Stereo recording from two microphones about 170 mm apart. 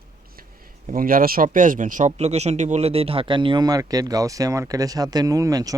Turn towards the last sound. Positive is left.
turn(degrees=-20)  # may be behind; listen again after turning